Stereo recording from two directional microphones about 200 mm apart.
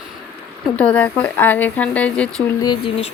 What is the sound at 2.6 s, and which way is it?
Speech, 25° left (ahead or behind).